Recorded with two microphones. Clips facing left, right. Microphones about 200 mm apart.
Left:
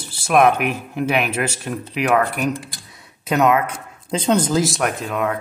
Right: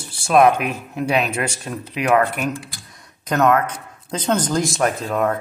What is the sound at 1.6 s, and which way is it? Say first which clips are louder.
Speech: left 2 dB; centre (ahead or behind).